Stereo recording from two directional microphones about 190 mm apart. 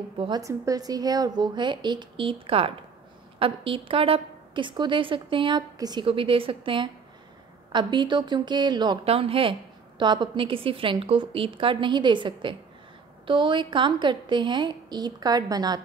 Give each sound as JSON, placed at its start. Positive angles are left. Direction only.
{"t": 0.2, "sound": "a woman's voice", "side_deg": -20}